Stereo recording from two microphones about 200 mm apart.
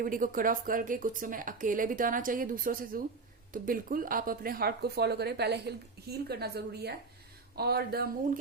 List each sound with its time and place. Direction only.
0.0 s speech: 45° right (ahead or behind)